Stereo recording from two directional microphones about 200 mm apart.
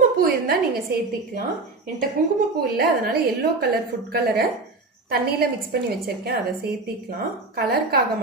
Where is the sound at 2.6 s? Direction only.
50° right (ahead or behind).